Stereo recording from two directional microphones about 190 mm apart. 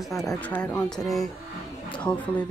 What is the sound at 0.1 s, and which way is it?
Speech, centre (ahead or behind).